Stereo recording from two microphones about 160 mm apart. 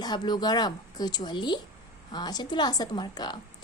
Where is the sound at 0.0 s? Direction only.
25° left (ahead or behind).